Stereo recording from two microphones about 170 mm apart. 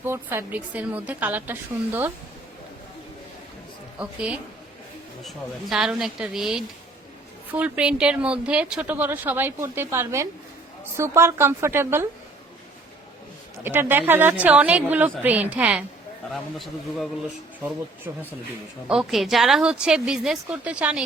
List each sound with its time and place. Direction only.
0.0 s speech: 15° right (ahead or behind)
3.9 s a woman's voice: 10° right (ahead or behind)
13.7 s a woman's voice: 10° right (ahead or behind)
18.9 s a woman's voice: centre (ahead or behind)